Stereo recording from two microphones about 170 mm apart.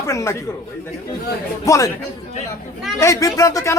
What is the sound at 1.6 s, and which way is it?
Speech, 20° left (ahead or behind).